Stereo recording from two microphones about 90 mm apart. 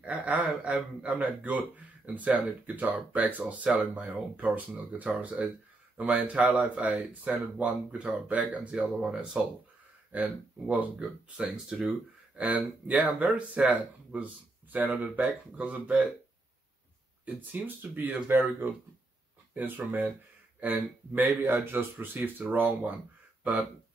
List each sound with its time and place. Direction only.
0.0 s speech: 15° right (ahead or behind)
8.7 s speech: 5° right (ahead or behind)
10.1 s speech: 20° right (ahead or behind)
17.2 s speech: 20° right (ahead or behind)